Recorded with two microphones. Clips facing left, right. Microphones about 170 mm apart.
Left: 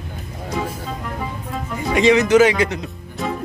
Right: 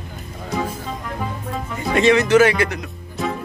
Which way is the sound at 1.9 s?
15° left (ahead or behind).